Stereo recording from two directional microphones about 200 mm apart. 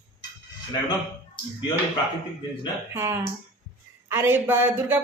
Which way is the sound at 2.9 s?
10° right (ahead or behind).